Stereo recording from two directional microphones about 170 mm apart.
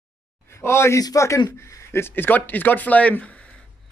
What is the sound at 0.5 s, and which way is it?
Speech, 15° left (ahead or behind).